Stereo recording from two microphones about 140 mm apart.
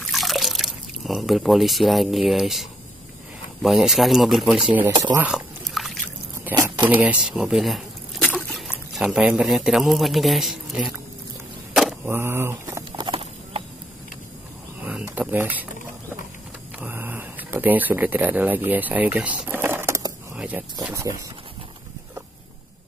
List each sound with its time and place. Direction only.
0.0 s drip: centre (ahead or behind)
3.6 s speech: centre (ahead or behind)
5.1 s speech: 10° right (ahead or behind)
5.8 s trickle: centre (ahead or behind)
6.5 s speech: 30° right (ahead or behind)
7.0 s speech: 5° right (ahead or behind)
12.0 s speech: 15° right (ahead or behind)
12.9 s horse: 35° right (ahead or behind)
14.8 s a sound: 10° right (ahead or behind)
16.8 s a sound: 10° right (ahead or behind)
18.7 s speech: 10° right (ahead or behind)
20.3 s a sound: 10° right (ahead or behind)
20.9 s speech: 20° right (ahead or behind)